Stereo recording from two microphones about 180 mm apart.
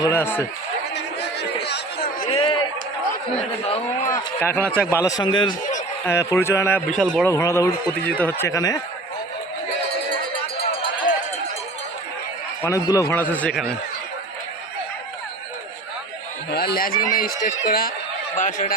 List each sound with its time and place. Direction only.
0.0 s speech: 15° left (ahead or behind)
1.4 s chatter: 65° left (ahead or behind)
2.2 s a sound: 30° left (ahead or behind)
3.7 s speech: 40° left (ahead or behind)
4.4 s speech: 10° left (ahead or behind); by 5.5 s 25° left (ahead or behind)
6.1 s speech: 15° left (ahead or behind)
6.9 s a man's voice: centre (ahead or behind)
7.3 s speech: 15° left (ahead or behind)
12.6 s speech: 20° left (ahead or behind)
16.5 s speech: 60° left (ahead or behind)
18.3 s speech: 45° left (ahead or behind)